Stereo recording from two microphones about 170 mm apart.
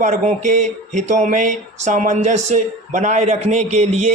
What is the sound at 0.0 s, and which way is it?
Speech, 45° right (ahead or behind).